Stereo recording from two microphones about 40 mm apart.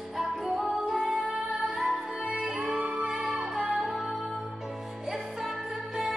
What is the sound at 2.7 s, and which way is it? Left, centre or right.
Music, right.